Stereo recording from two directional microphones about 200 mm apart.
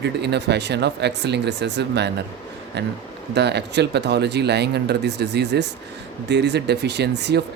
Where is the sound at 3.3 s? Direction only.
55° right (ahead or behind).